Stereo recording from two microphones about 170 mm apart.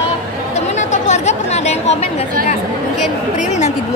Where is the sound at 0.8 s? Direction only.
45° left (ahead or behind).